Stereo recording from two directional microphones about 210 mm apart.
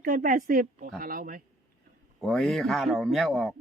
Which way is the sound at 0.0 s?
40° right (ahead or behind).